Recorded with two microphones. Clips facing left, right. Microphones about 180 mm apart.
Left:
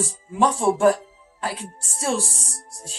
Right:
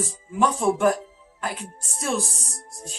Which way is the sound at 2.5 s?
30° left (ahead or behind).